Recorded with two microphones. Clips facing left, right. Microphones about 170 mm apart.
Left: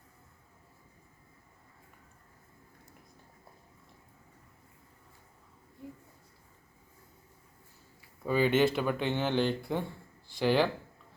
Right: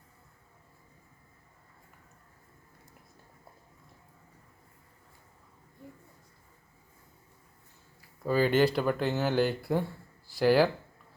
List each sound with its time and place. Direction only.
8.2 s speech: centre (ahead or behind)